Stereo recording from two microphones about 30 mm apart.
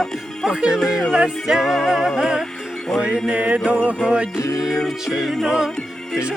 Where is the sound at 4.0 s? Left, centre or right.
Right.